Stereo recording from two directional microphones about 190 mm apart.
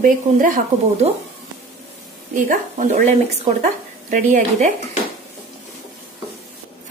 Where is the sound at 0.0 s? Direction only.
45° right (ahead or behind).